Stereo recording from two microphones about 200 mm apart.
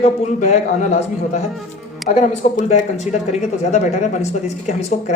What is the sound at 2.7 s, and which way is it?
Speech, 35° left (ahead or behind).